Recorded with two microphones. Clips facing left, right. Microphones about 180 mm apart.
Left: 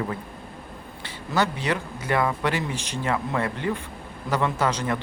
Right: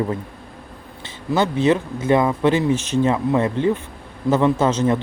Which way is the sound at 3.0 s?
20° right (ahead or behind).